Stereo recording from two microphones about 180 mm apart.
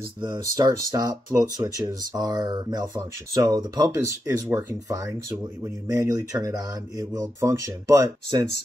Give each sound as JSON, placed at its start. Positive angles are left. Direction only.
{"t": 0.2, "sound": "speech", "side_deg": -20}